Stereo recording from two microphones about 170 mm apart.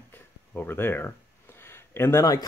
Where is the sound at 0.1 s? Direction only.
10° left (ahead or behind).